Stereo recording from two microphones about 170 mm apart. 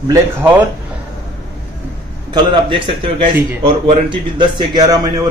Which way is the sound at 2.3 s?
25° right (ahead or behind).